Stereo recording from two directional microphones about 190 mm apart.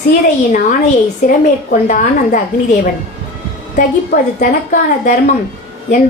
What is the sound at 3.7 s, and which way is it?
A woman's voice, 45° left (ahead or behind).